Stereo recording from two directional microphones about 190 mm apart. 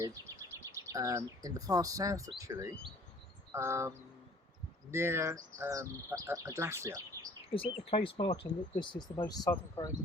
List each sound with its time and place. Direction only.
0.0 s speech: 15° right (ahead or behind)
7.5 s speech: 30° left (ahead or behind)